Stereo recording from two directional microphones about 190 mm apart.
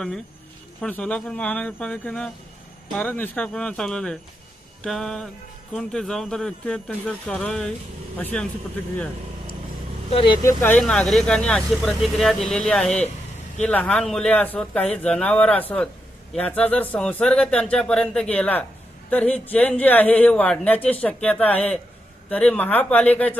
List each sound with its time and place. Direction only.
0.8 s speech: 5° left (ahead or behind)
10.1 s speech: 25° left (ahead or behind)
10.6 s speech: 10° left (ahead or behind)